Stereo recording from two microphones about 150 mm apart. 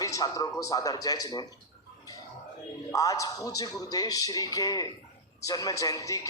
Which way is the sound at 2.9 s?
20° left (ahead or behind).